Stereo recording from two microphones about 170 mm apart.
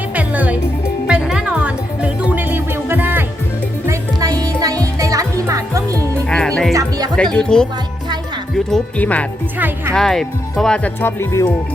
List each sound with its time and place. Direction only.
0.1 s music: 10° right (ahead or behind)
6.2 s music: 5° left (ahead or behind)
7.3 s speech: 5° left (ahead or behind)
9.6 s speech: 10° right (ahead or behind)
9.9 s speech: 5° left (ahead or behind)